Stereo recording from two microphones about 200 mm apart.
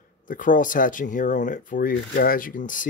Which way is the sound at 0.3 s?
40° left (ahead or behind).